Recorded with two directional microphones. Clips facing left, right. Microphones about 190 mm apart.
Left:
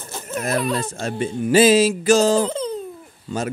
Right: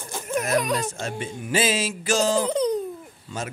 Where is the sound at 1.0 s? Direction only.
40° left (ahead or behind).